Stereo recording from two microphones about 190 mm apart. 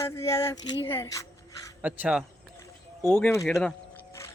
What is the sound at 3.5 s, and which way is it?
Speech, centre (ahead or behind).